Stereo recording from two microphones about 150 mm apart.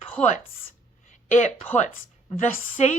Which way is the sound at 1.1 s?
50° left (ahead or behind).